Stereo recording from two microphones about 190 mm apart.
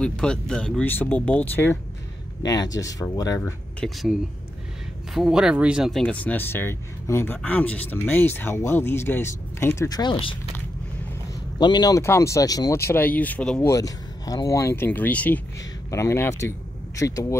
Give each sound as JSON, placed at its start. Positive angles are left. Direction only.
{"t": 0.0, "sound": "speech", "side_deg": 5}
{"t": 3.8, "sound": "speech", "side_deg": 0}
{"t": 11.5, "sound": "speech", "side_deg": 20}